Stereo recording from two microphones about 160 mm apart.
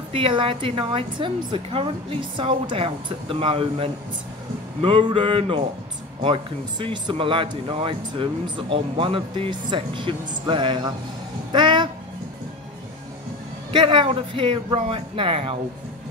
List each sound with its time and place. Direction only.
0.1 s speech: 35° right (ahead or behind)
11.5 s music: 30° right (ahead or behind)
13.7 s speech: 30° right (ahead or behind)